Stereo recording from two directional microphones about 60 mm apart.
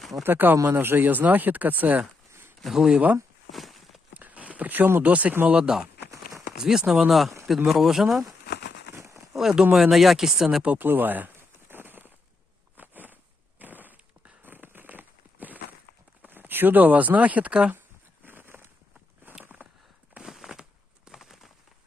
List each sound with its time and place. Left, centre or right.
0.2 s speech: right
2.6 s speech: centre
3.5 s walk: centre
4.2 s a sound: right
4.9 s speech: right
5.5 s speech: centre
7.1 s speech: centre
9.3 s speech: centre
10.8 s a sound: right
16.2 s speech: right
18.3 s a sound: right
20.2 s a sound: centre
21.0 s bird: centre